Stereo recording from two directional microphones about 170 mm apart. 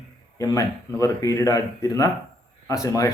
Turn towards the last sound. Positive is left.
turn(degrees=20)  # may be behind; listen again after turning